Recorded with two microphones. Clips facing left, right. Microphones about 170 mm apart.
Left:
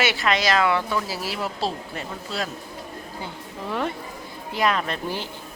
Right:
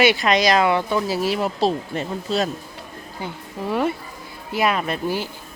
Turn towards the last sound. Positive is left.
turn(degrees=-10)  # may be behind; listen again after turning